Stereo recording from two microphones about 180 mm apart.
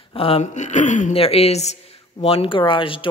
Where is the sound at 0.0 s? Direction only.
30° left (ahead or behind).